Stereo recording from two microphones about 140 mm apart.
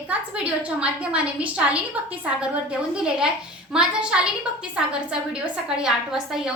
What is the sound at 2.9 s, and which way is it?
A woman's voice, 5° right (ahead or behind).